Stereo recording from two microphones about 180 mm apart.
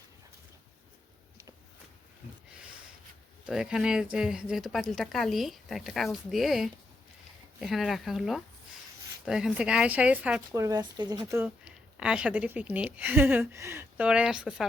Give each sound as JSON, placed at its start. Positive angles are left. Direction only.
{"t": 3.4, "sound": "speech", "side_deg": -5}
{"t": 10.6, "sound": "speech", "side_deg": -20}
{"t": 11.4, "sound": "a woman's voice", "side_deg": -5}